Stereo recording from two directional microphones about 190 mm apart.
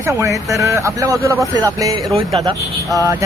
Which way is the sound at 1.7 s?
20° right (ahead or behind).